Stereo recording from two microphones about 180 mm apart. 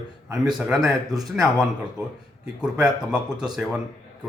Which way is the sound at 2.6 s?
5° right (ahead or behind).